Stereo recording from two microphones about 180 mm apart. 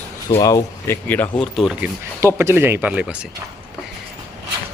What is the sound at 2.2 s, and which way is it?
A man's voice, 15° right (ahead or behind).